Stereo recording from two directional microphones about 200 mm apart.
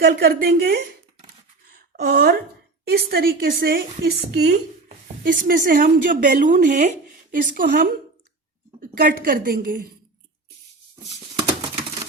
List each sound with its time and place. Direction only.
0.0 s a woman's voice: 50° right (ahead or behind)